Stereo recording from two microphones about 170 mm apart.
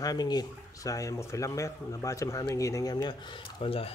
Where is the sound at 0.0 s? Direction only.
25° left (ahead or behind).